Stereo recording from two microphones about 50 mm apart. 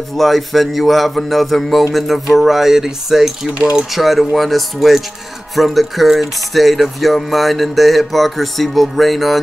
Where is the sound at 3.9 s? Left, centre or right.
Centre.